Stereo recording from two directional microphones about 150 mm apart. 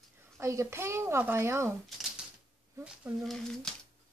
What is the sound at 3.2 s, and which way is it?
Speech, 5° left (ahead or behind).